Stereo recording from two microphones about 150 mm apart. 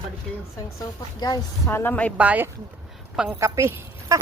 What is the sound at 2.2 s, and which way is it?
A woman's voice, 10° right (ahead or behind).